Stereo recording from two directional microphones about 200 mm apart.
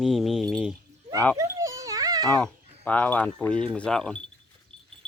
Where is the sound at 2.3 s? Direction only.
5° left (ahead or behind).